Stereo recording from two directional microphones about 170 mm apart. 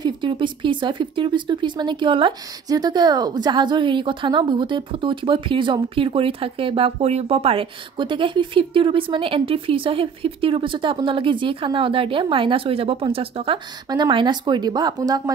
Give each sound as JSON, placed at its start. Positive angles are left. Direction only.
{"t": 0.0, "sound": "speech", "side_deg": -30}